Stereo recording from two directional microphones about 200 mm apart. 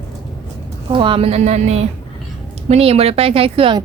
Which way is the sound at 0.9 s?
25° right (ahead or behind).